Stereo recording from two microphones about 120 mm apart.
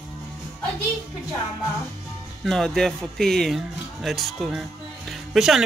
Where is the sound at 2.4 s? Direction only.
5° left (ahead or behind).